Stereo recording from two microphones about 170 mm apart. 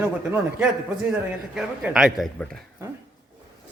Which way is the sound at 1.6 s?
5° right (ahead or behind).